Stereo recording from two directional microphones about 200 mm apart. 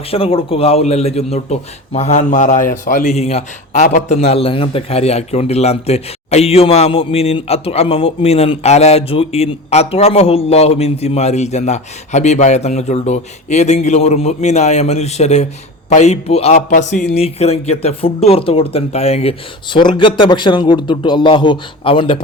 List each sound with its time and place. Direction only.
0.1 s a man's voice: 30° left (ahead or behind)